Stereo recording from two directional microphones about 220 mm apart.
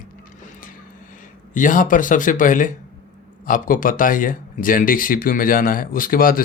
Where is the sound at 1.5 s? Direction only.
35° left (ahead or behind).